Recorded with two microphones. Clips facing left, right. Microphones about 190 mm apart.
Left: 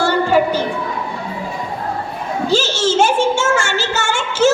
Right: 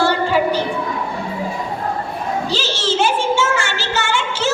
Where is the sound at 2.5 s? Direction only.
45° left (ahead or behind).